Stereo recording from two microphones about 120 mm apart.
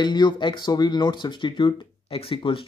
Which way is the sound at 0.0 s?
35° left (ahead or behind).